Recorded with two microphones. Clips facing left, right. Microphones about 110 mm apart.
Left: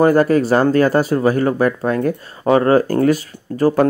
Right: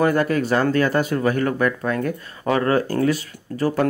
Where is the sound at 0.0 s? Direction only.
40° left (ahead or behind).